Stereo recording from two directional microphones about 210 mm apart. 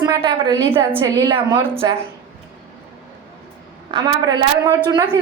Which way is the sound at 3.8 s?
20° right (ahead or behind).